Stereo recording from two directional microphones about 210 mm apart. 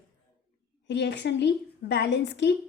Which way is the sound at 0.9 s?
55° left (ahead or behind).